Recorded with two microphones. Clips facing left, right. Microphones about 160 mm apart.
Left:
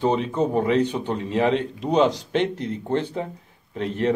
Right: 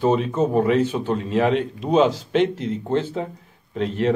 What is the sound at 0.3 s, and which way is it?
Speech, 15° left (ahead or behind).